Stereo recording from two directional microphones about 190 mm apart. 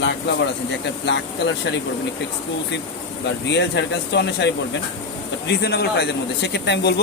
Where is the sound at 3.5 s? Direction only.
65° left (ahead or behind).